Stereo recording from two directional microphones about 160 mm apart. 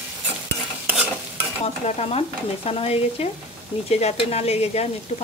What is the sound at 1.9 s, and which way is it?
Stir, 40° left (ahead or behind).